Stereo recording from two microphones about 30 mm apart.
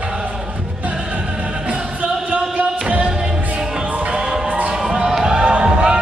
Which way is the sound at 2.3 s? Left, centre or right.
Right.